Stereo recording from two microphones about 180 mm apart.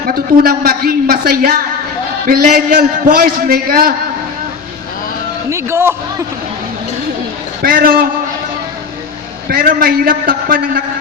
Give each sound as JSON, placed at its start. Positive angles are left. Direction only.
{"t": 0.0, "sound": "a man's voice", "side_deg": -55}
{"t": 5.5, "sound": "a man's voice", "side_deg": -15}
{"t": 7.6, "sound": "a man's voice", "side_deg": -55}
{"t": 9.5, "sound": "a man's voice", "side_deg": -55}